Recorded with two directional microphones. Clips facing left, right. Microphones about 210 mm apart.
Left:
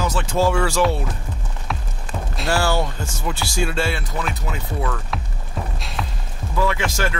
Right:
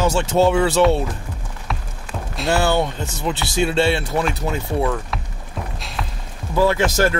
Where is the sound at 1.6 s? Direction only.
Centre (ahead or behind).